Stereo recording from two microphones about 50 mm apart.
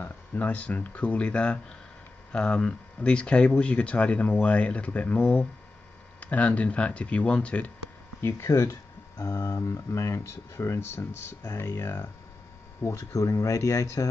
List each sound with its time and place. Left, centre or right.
0.0 s speech: left
8.2 s speech: left
10.9 s speech: left
12.8 s speech: left